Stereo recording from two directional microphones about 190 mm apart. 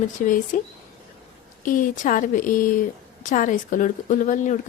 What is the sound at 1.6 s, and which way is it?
A woman's voice, 45° left (ahead or behind).